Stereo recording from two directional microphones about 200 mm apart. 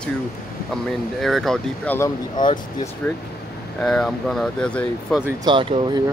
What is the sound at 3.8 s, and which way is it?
Speech, 5° left (ahead or behind).